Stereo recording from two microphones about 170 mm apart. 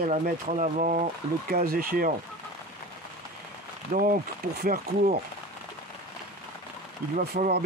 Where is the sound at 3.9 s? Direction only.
55° right (ahead or behind).